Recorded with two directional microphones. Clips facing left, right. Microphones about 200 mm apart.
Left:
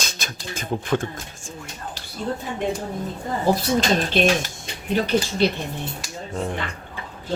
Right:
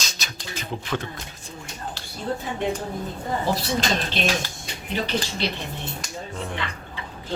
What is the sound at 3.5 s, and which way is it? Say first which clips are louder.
Speech: left 7 dB; 50° left (ahead or behind).